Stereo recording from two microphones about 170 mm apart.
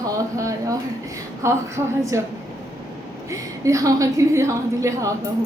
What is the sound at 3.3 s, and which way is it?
A woman's voice, 20° right (ahead or behind).